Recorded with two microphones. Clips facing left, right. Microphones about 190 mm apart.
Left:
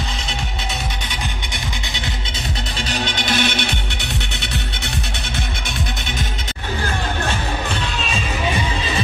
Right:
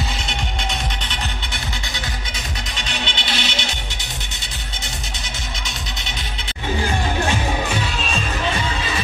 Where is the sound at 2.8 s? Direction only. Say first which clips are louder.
Left 6 dB; 40° left (ahead or behind).